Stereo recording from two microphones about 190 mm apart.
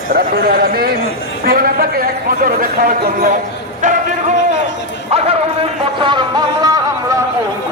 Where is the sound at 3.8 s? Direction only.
40° right (ahead or behind).